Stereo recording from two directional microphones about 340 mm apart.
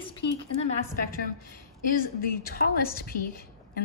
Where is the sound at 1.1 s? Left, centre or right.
Left.